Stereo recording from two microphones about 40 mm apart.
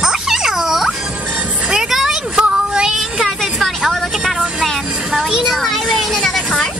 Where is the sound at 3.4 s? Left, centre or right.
Centre.